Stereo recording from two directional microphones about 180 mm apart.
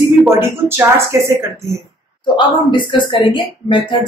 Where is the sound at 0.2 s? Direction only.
15° right (ahead or behind).